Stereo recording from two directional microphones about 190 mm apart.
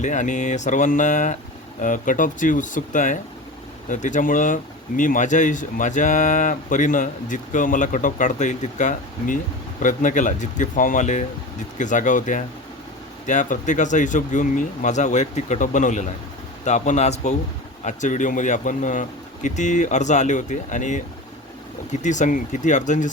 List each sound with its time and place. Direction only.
0.0 s speech: 40° left (ahead or behind)
22.0 s speech: 40° left (ahead or behind)